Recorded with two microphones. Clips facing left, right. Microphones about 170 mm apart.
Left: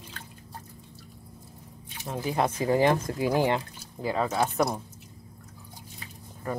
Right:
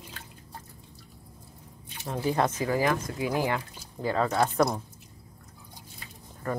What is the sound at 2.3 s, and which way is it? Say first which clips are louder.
Speech: left 2 dB; 10° left (ahead or behind).